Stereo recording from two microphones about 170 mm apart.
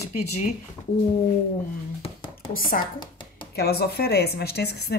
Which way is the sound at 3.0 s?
30° left (ahead or behind).